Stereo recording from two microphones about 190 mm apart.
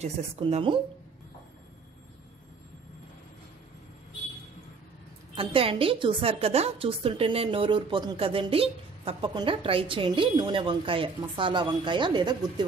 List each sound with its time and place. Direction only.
0.0 s a woman's voice: 35° right (ahead or behind)
5.3 s a woman's voice: 30° right (ahead or behind)